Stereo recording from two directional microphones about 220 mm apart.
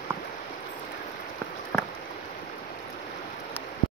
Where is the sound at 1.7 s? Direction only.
Centre (ahead or behind).